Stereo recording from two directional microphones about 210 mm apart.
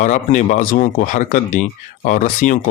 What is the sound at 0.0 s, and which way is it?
Speech, 35° left (ahead or behind).